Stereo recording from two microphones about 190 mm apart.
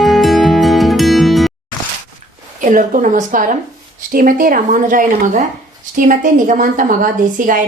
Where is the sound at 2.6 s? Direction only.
45° right (ahead or behind).